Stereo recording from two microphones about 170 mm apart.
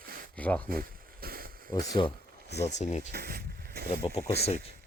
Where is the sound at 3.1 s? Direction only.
65° right (ahead or behind).